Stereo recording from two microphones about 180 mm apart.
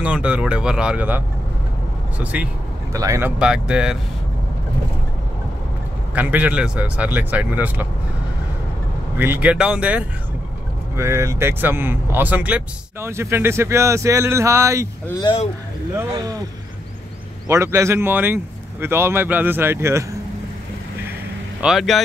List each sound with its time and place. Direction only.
0.0 s speech: 5° right (ahead or behind)
2.9 s speech: 15° right (ahead or behind)
6.1 s speech: 10° right (ahead or behind)
9.2 s speech: 10° right (ahead or behind)
17.5 s speech: 15° right (ahead or behind)
21.5 s speech: centre (ahead or behind)